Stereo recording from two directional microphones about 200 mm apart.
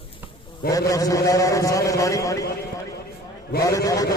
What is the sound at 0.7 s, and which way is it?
A man's voice, 15° left (ahead or behind).